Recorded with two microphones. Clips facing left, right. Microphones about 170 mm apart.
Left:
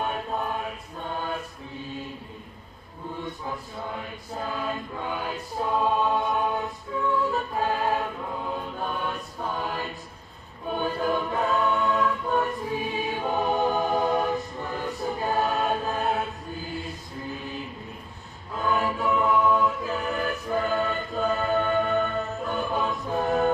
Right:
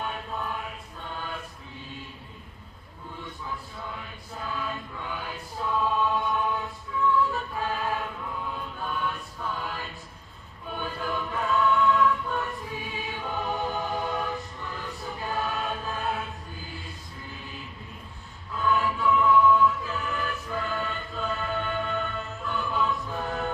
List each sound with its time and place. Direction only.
1.1 s choir: 40° left (ahead or behind)
4.4 s choir: 40° left (ahead or behind)
7.5 s music: 45° left (ahead or behind)
10.7 s choir: 45° left (ahead or behind)
18.5 s choir: 40° left (ahead or behind)